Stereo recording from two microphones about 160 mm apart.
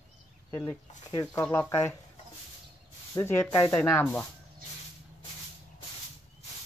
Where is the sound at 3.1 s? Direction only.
15° left (ahead or behind).